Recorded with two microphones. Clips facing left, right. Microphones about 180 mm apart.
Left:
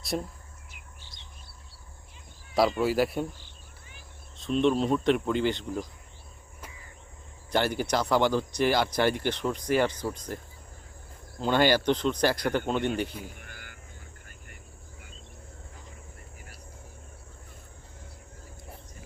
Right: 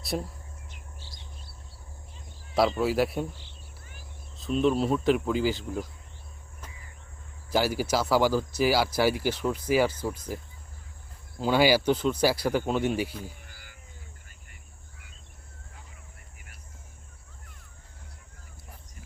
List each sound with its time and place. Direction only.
0.0 s speech: centre (ahead or behind)
2.6 s speech: centre (ahead or behind)
4.4 s speech: 5° right (ahead or behind)
7.5 s speech: 5° right (ahead or behind)
13.4 s frog: 60° left (ahead or behind)